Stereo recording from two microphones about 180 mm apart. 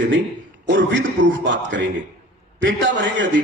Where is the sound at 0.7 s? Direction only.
85° right.